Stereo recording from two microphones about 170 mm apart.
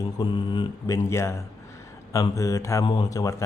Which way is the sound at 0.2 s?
30° left (ahead or behind).